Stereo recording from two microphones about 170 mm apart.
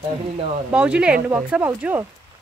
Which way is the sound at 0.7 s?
5° right (ahead or behind).